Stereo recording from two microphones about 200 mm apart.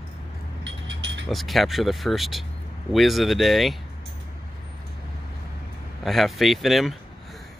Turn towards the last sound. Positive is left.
turn(degrees=0)  # may be behind; listen again after turning